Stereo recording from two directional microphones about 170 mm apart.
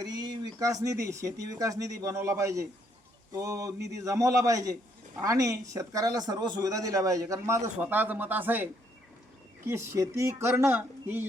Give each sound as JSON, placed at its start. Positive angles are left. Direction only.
{"t": 0.0, "sound": "speech", "side_deg": -25}